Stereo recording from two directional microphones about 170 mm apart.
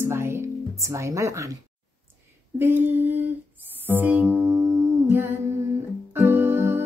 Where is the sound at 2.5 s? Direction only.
10° right (ahead or behind).